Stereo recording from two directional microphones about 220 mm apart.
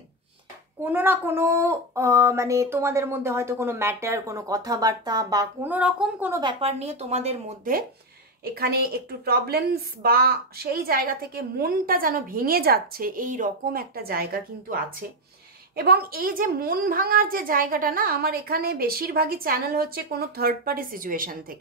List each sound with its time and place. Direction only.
0.8 s speech: 10° right (ahead or behind)
6.4 s a woman's voice: 30° right (ahead or behind)